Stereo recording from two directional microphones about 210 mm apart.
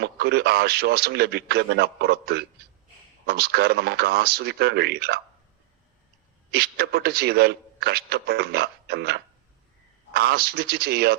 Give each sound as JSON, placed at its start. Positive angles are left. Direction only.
{"t": 0.0, "sound": "a man's voice", "side_deg": -50}
{"t": 6.5, "sound": "a man's voice", "side_deg": -50}